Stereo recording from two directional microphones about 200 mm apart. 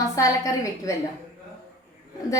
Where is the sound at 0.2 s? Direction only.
15° left (ahead or behind).